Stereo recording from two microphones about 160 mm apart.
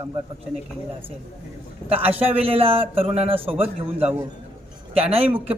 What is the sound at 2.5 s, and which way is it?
Speech, 35° right (ahead or behind).